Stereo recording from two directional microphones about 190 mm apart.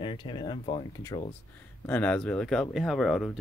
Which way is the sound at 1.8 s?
10° left (ahead or behind).